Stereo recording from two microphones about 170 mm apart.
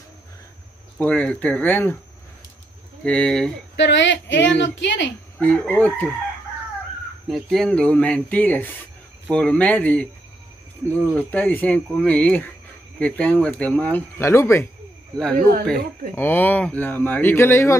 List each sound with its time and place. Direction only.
0.9 s speech: 10° left (ahead or behind)
3.0 s speech: 5° left (ahead or behind)
3.7 s a woman's voice: 90° left
5.4 s speech: 10° left (ahead or behind)
7.2 s speech: centre (ahead or behind)
16.2 s speech: 10° left (ahead or behind)